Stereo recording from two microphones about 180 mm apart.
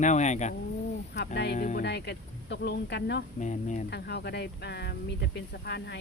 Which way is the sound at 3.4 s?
45° left (ahead or behind).